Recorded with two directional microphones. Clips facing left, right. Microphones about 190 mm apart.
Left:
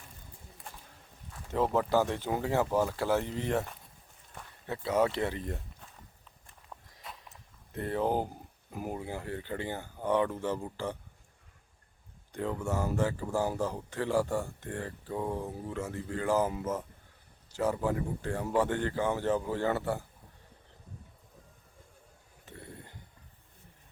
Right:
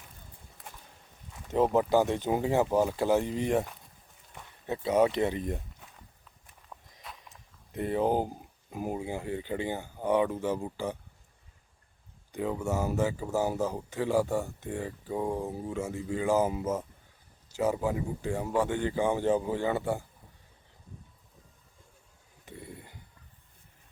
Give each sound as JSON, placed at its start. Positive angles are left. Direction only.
{"t": 1.3, "sound": "speech", "side_deg": -15}
{"t": 6.7, "sound": "walk", "side_deg": 5}
{"t": 7.7, "sound": "speech", "side_deg": -15}
{"t": 12.3, "sound": "speech", "side_deg": -10}
{"t": 17.6, "sound": "speech", "side_deg": -10}
{"t": 22.4, "sound": "a sound", "side_deg": -15}